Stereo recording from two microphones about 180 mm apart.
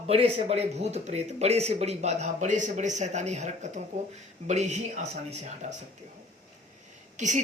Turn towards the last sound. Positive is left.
turn(degrees=-40)  # may be behind; listen again after turning